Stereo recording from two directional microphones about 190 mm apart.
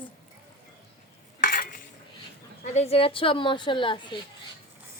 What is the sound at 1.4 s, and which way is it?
Cutlery, 50° left (ahead or behind).